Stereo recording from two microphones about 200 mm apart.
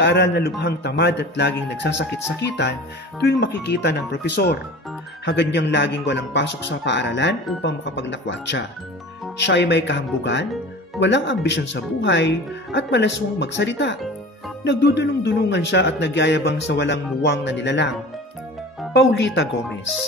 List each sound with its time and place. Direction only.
0.0 s speech: 60° left (ahead or behind)
18.9 s speech: 60° left (ahead or behind)